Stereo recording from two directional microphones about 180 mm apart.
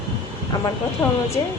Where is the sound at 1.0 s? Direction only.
20° left (ahead or behind).